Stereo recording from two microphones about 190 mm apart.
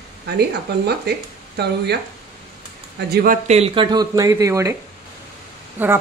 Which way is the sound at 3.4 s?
35° right (ahead or behind).